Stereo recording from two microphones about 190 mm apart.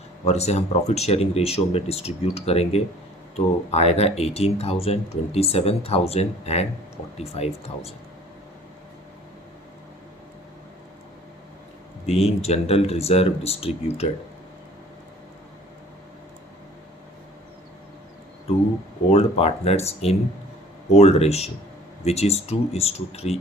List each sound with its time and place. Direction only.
0.3 s speech: 35° left (ahead or behind)
12.0 s speech: 35° left (ahead or behind)
19.1 s speech: 30° left (ahead or behind)